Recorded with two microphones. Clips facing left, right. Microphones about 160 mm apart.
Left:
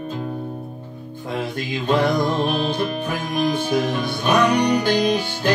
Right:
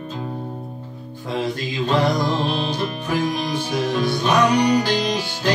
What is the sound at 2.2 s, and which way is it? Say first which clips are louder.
Music: left 1 dB; 50° left (ahead or behind).